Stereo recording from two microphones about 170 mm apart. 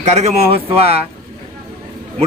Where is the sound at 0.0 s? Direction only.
40° right (ahead or behind).